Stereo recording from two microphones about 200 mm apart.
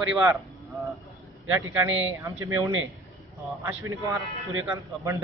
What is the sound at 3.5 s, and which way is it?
Speech, centre (ahead or behind).